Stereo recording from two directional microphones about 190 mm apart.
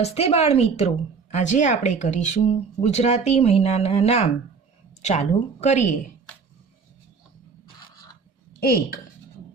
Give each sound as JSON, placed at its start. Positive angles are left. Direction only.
{"t": 0.0, "sound": "a woman's voice", "side_deg": 35}
{"t": 8.6, "sound": "speech", "side_deg": 55}